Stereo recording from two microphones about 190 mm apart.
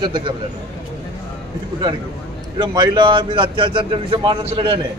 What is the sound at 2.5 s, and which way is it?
A man's voice, 25° right (ahead or behind).